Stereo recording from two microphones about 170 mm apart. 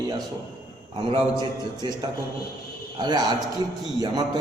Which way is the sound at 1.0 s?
25° right (ahead or behind).